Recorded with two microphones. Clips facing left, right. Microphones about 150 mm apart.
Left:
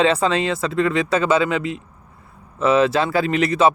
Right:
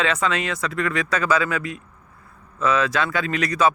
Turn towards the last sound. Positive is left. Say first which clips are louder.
# left 4 dB
turn(degrees=25)  # may be behind; listen again after turning